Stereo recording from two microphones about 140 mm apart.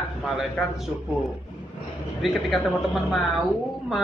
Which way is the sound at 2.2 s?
Centre (ahead or behind).